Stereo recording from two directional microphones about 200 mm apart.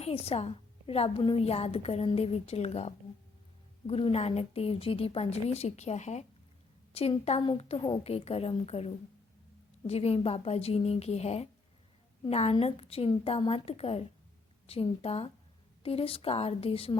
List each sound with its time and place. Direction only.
0.0 s a woman's voice: 30° left (ahead or behind)